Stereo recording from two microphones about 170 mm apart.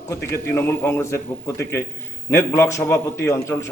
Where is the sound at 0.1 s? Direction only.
15° left (ahead or behind).